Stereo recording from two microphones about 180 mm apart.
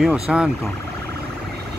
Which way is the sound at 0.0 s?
5° right (ahead or behind).